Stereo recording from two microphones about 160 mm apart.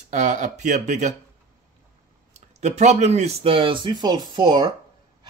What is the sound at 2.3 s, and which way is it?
Speech, 45° right (ahead or behind).